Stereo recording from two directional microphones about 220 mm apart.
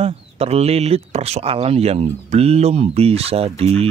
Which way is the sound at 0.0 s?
25° right (ahead or behind).